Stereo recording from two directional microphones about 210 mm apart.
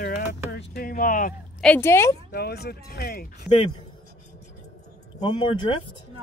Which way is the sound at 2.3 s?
50° left (ahead or behind).